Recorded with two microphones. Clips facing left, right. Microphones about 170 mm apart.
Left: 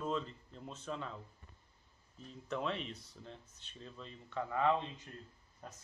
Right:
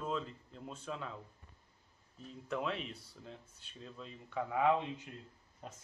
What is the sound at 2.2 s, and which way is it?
A man's voice, 5° right (ahead or behind).